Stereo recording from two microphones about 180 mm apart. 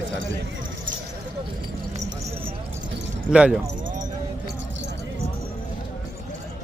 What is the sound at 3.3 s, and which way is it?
Speech, 5° right (ahead or behind).